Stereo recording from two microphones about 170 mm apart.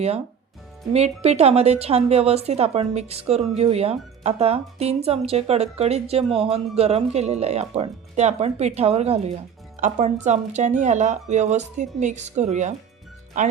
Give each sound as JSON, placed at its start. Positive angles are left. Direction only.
{"t": 0.9, "sound": "speech", "side_deg": -40}